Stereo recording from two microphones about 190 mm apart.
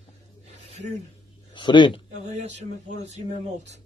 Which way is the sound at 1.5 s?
25° left (ahead or behind).